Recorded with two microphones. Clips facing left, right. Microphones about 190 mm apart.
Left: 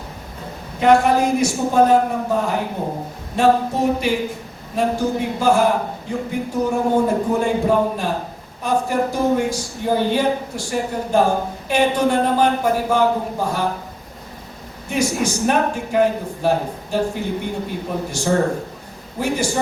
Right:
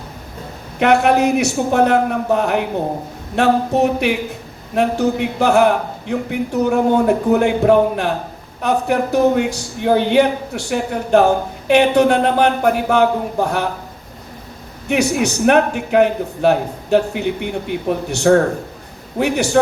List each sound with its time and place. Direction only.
0.8 s a man's voice: 70° right (ahead or behind)
14.8 s a man's voice: 70° right (ahead or behind)